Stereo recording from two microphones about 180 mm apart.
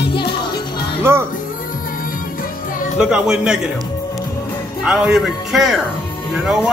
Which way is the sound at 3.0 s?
5° right (ahead or behind).